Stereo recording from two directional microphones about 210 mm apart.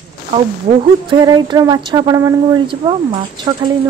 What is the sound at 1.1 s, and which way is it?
Speech, 20° right (ahead or behind).